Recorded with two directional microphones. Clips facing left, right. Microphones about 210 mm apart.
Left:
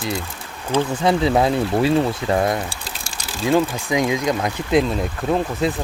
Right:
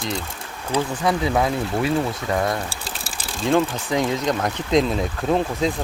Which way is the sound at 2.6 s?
5° right (ahead or behind).